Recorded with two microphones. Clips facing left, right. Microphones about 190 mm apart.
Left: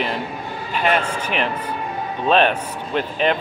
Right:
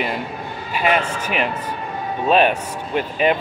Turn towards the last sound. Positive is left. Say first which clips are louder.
# right 1 dB
turn(degrees=-10)  # may be behind; listen again after turning